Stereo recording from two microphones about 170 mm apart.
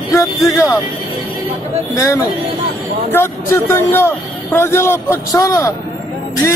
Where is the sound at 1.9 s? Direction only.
20° left (ahead or behind).